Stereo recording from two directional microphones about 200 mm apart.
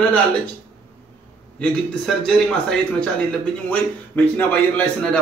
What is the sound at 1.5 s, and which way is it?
A man's voice, 5° left (ahead or behind).